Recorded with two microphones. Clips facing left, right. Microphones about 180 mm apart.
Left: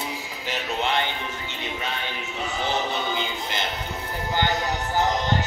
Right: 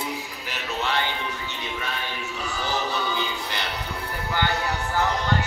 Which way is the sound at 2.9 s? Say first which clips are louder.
Even; 20° left (ahead or behind).